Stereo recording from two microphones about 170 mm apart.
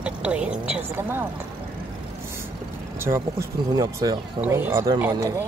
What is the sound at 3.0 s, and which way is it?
Speech, 15° right (ahead or behind).